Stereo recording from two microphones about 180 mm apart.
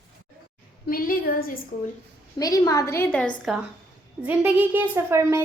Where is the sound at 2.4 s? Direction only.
20° left (ahead or behind); by 3.6 s 5° left (ahead or behind).